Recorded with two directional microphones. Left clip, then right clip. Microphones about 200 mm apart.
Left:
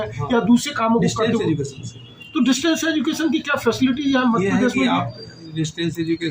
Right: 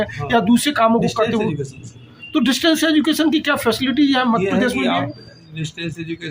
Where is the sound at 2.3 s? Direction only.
55° right (ahead or behind).